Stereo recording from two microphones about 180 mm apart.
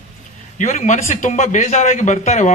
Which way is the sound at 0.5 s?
40° left (ahead or behind).